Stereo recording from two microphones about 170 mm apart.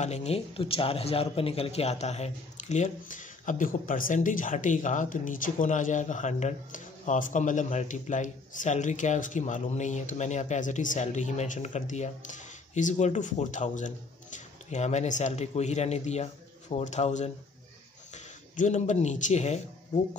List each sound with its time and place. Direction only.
0.0 s a man's voice: 40° left (ahead or behind)